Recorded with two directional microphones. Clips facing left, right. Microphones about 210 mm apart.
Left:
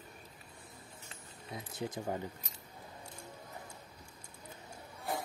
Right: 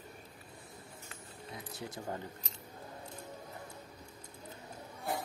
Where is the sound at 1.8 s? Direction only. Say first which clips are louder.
Left 4 dB; 15° left (ahead or behind).